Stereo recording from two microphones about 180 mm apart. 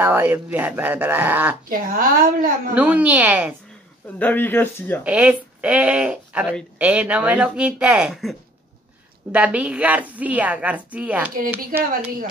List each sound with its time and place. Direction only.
0.0 s a woman's voice: 10° right (ahead or behind)
1.7 s a woman's voice: 50° right (ahead or behind)
2.7 s a woman's voice: 10° right (ahead or behind)
4.2 s speech: 10° left (ahead or behind)
5.0 s a woman's voice: 5° right (ahead or behind)
11.7 s a woman's voice: 50° right (ahead or behind)